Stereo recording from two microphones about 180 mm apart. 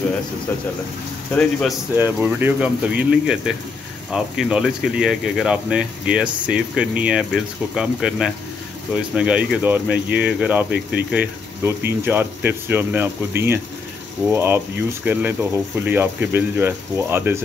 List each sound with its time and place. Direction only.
0.5 s speech: 10° left (ahead or behind)
2.0 s speech: 10° right (ahead or behind)